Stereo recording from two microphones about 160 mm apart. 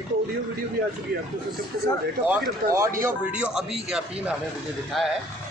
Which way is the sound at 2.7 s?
20° right (ahead or behind).